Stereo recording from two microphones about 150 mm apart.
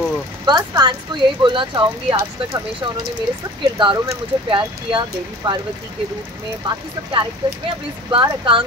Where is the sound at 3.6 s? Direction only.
35° right (ahead or behind).